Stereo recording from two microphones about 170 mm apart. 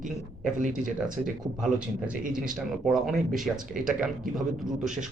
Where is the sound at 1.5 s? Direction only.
5° right (ahead or behind).